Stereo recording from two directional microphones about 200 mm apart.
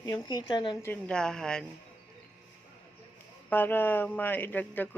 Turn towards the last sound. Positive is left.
turn(degrees=10)  # may be behind; listen again after turning